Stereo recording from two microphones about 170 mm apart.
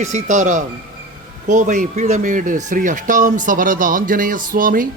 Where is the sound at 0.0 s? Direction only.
45° right (ahead or behind).